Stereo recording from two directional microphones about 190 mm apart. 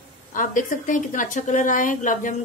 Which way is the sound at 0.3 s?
45° left (ahead or behind).